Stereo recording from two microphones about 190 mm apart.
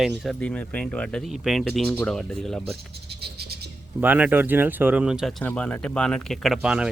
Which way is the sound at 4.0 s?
10° right (ahead or behind).